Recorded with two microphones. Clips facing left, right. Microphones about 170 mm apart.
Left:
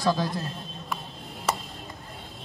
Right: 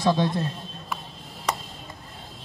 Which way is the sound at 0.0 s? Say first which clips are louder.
Right 3 dB; 25° right (ahead or behind).